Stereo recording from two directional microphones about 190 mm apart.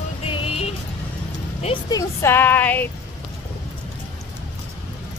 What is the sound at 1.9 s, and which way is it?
Speech, 15° left (ahead or behind).